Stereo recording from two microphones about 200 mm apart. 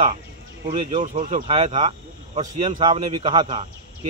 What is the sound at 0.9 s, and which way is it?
A man's voice, 35° right (ahead or behind).